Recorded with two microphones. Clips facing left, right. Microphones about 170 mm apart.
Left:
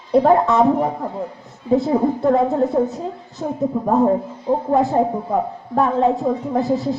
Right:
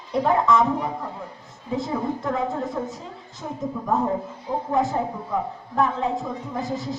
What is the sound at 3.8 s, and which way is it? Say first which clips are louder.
A woman's voice: left 7 dB; 35° left (ahead or behind).